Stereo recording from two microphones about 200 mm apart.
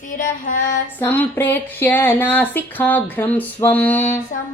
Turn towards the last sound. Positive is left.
turn(degrees=10)  # may be behind; listen again after turning